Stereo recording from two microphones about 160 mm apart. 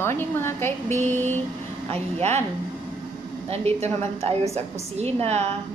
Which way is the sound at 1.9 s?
40° right (ahead or behind).